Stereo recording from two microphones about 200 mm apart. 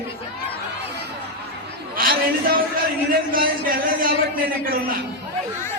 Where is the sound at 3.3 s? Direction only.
45° right (ahead or behind).